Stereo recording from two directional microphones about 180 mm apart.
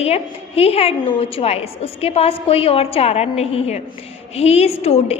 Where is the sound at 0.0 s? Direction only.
35° left (ahead or behind).